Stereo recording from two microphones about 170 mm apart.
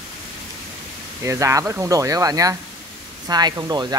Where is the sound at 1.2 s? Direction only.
15° right (ahead or behind).